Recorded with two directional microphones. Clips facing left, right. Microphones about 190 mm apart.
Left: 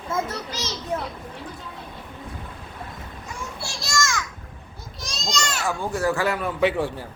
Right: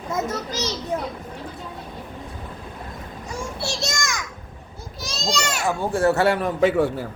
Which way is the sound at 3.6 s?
20° right (ahead or behind).